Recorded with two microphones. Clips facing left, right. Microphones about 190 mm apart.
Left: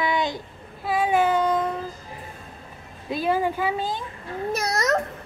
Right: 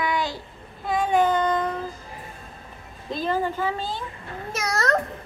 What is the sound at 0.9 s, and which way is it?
Child singing, 5° left (ahead or behind).